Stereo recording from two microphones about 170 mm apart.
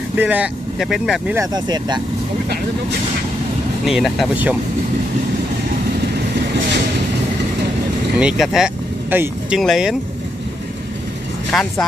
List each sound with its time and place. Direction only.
0.1 s speech: 10° right (ahead or behind)
1.3 s speech: 20° right (ahead or behind)
3.8 s speech: centre (ahead or behind)
8.2 s speech: 5° right (ahead or behind)
11.5 s speech: centre (ahead or behind)